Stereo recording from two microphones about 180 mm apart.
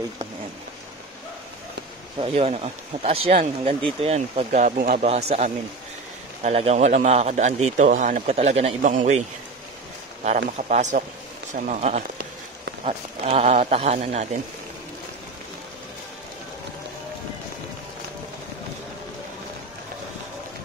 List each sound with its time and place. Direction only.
2.1 s speech: 30° right (ahead or behind)
5.0 s speech: 35° right (ahead or behind)
10.7 s speech: 40° right (ahead or behind)